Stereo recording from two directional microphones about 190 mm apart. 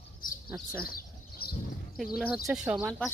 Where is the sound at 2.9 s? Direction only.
5° left (ahead or behind).